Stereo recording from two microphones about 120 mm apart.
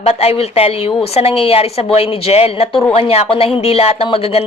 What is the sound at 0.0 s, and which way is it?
A woman's voice, 60° left (ahead or behind).